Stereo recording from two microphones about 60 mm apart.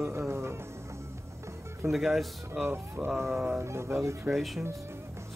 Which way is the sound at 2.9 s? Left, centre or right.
Right.